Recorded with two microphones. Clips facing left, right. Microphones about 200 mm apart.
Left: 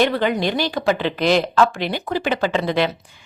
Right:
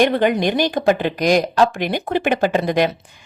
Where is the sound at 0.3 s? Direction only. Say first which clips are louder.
Right 3 dB; 15° right (ahead or behind).